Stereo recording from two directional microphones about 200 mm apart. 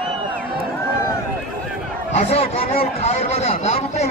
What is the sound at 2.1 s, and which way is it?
A man's voice, 30° left (ahead or behind).